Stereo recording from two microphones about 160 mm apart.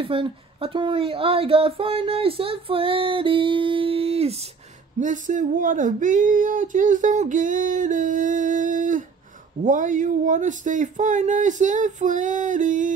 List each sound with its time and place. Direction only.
0.0 s a woman's voice: 35° right (ahead or behind)
5.0 s speech: 55° right (ahead or behind)